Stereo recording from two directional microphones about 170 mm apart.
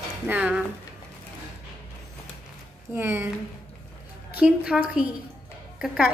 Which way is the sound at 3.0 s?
15° right (ahead or behind).